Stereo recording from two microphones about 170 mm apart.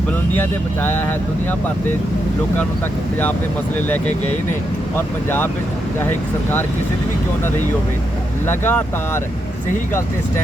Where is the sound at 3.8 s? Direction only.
10° left (ahead or behind).